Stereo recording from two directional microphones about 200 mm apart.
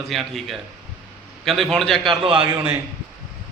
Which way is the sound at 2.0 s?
25° right (ahead or behind).